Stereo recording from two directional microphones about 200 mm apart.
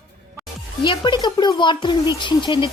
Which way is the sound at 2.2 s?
25° left (ahead or behind).